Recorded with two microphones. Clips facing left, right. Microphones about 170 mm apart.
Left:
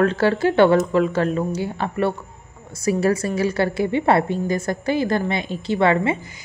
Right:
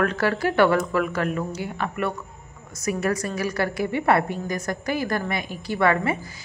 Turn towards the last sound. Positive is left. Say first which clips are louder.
# left 3 dB
turn(degrees=25)  # may be behind; listen again after turning